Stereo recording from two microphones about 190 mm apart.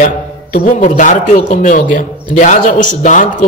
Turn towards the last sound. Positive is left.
turn(degrees=40)  # may be behind; listen again after turning